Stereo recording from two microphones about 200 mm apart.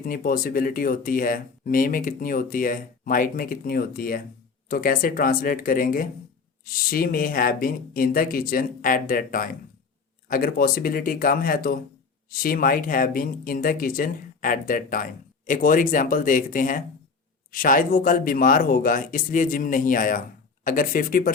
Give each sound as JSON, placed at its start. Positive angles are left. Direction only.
{"t": 0.0, "sound": "speech", "side_deg": 45}